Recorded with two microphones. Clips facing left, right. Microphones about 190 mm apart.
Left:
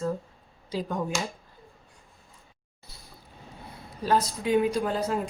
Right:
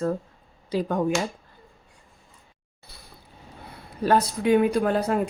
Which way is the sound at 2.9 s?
60° right (ahead or behind).